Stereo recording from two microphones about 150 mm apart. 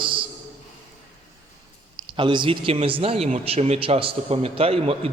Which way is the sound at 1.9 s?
35° right (ahead or behind).